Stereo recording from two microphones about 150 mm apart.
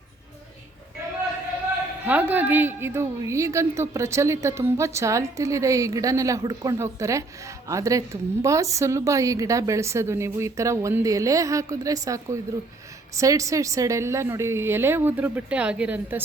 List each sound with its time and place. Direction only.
2.0 s a woman's voice: 10° right (ahead or behind)